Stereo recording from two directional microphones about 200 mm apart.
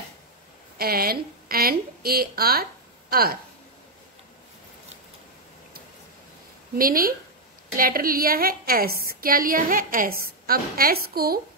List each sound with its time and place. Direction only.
0.7 s a woman's voice: 50° right (ahead or behind)
6.8 s a woman's voice: 45° right (ahead or behind)